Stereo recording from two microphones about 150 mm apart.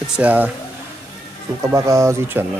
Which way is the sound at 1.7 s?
20° right (ahead or behind).